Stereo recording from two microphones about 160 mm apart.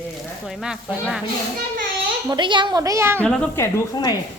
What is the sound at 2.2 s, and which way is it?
Speech, 30° right (ahead or behind).